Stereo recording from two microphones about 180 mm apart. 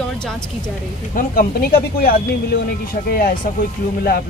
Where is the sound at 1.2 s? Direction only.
55° left (ahead or behind).